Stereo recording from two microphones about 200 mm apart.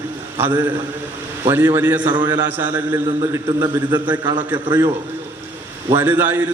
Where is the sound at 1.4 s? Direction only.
15° right (ahead or behind).